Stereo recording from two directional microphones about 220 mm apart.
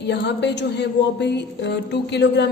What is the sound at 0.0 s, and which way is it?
A woman's voice, 50° left (ahead or behind).